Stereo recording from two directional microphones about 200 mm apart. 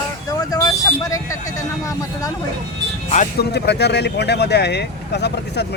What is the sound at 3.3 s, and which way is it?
Speech, 55° left (ahead or behind).